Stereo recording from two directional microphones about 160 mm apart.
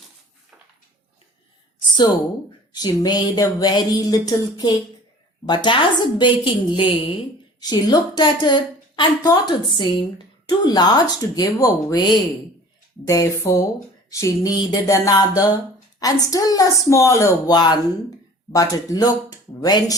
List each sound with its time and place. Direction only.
2.7 s speech: 25° left (ahead or behind)